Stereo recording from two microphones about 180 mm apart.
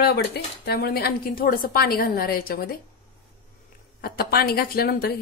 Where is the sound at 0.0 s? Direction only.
65° left (ahead or behind).